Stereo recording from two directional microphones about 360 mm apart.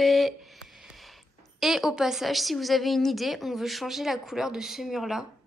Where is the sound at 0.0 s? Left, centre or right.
Centre.